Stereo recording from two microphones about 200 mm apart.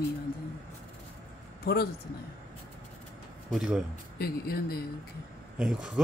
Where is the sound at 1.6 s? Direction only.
50° left (ahead or behind).